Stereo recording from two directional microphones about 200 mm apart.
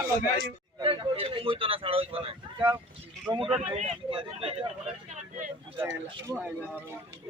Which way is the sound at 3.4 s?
30° right (ahead or behind).